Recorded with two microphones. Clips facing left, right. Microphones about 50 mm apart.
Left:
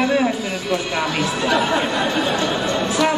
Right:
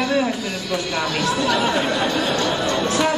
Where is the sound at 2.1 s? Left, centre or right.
Centre.